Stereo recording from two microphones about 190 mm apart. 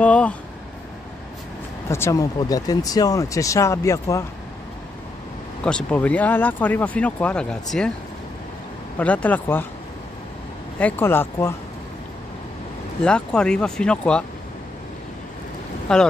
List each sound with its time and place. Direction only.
0.0 s speech: 5° left (ahead or behind)
1.9 s speech: 15° left (ahead or behind)
5.6 s speech: 5° left (ahead or behind)
8.9 s speech: 5° left (ahead or behind)
10.8 s speech: 10° left (ahead or behind)
13.0 s speech: 5° left (ahead or behind)
15.9 s speech: 5° left (ahead or behind)